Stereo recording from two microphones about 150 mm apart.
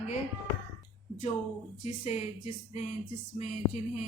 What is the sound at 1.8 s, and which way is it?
A woman's voice, 50° left (ahead or behind).